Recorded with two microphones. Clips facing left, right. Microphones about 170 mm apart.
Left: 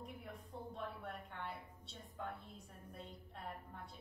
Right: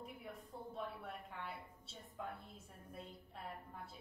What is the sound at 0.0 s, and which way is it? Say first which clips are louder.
Music: even; centre (ahead or behind).